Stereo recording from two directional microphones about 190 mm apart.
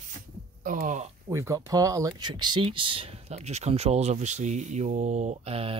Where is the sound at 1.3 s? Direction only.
15° right (ahead or behind).